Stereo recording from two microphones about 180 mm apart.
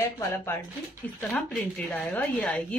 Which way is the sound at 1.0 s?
Centre (ahead or behind).